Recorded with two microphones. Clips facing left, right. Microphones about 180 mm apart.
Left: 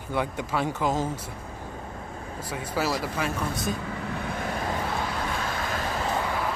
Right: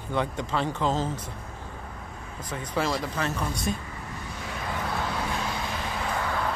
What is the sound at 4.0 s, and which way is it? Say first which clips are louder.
Vehicle: left 7 dB; 65° left (ahead or behind).